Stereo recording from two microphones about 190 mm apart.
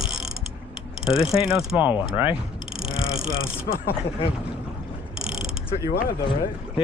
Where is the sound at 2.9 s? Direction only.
30° left (ahead or behind).